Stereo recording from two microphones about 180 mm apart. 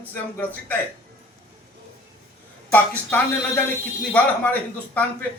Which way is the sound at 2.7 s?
10° left (ahead or behind).